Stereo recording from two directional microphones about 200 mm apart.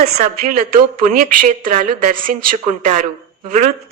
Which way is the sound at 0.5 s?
45° right (ahead or behind).